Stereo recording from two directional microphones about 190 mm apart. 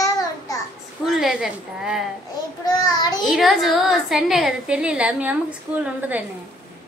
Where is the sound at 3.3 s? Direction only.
Centre (ahead or behind).